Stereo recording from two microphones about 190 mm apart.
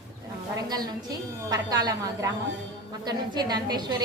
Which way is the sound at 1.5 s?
20° right (ahead or behind).